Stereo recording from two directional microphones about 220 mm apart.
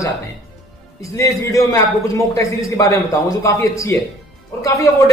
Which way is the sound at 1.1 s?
15° left (ahead or behind).